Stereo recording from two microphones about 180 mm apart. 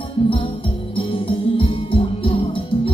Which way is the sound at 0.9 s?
30° left (ahead or behind).